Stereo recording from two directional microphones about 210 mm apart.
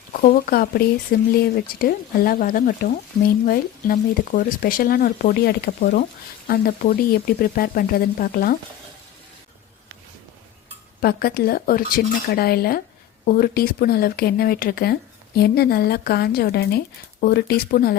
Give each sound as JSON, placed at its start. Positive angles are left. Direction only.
{"t": 0.1, "sound": "speech", "side_deg": 40}
{"t": 11.0, "sound": "speech", "side_deg": 45}